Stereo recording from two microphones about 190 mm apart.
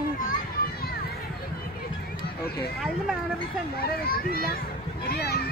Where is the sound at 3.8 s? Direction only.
55° left (ahead or behind).